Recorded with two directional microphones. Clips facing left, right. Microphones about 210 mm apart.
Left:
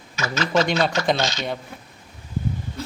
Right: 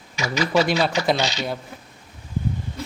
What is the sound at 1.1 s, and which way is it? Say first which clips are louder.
Speech: even; 15° right (ahead or behind).